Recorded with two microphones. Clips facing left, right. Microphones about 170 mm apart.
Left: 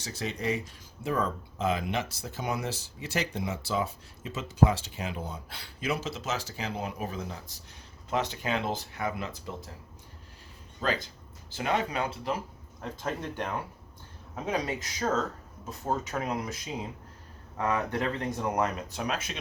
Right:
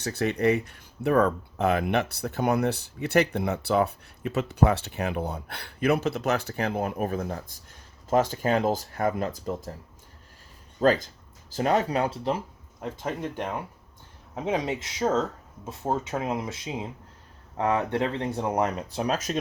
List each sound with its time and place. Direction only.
0.0 s speech: 60° right (ahead or behind); by 9.7 s 45° right (ahead or behind)
10.8 s speech: 45° right (ahead or behind)
13.0 s speech: 20° right (ahead or behind); by 19.4 s 40° right (ahead or behind)